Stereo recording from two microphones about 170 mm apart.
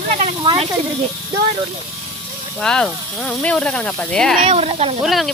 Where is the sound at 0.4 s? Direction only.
30° right (ahead or behind).